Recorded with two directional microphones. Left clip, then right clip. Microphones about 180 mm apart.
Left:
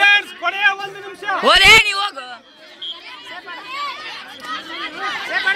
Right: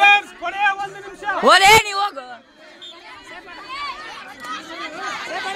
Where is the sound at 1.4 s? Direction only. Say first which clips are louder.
Left 1 dB; 35° right (ahead or behind).